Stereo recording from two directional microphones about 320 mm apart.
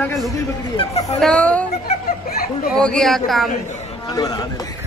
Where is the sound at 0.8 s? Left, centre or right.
Centre.